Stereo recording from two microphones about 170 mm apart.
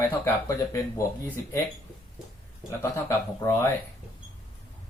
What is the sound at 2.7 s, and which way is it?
Speech, 15° left (ahead or behind).